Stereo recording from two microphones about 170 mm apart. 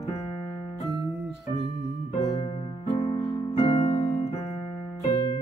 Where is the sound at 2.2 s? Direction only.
20° left (ahead or behind).